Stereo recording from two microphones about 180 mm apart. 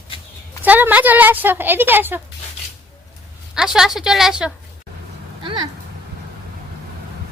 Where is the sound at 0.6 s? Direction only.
10° right (ahead or behind).